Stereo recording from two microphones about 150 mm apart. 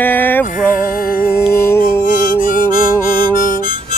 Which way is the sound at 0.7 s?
70° left (ahead or behind).